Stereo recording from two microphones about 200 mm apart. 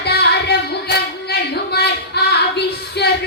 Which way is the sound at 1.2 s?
55° left (ahead or behind).